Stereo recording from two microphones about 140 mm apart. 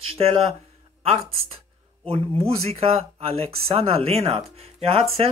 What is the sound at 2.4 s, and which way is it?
Speech, 45° right (ahead or behind).